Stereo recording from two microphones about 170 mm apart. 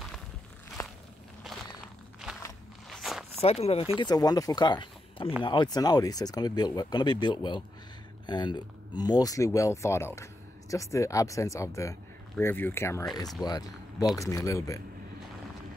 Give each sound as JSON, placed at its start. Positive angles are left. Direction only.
{"t": 0.8, "sound": "walk", "side_deg": 15}
{"t": 2.9, "sound": "walk", "side_deg": 0}
{"t": 3.3, "sound": "speech", "side_deg": 35}
{"t": 4.0, "sound": "speech", "side_deg": 20}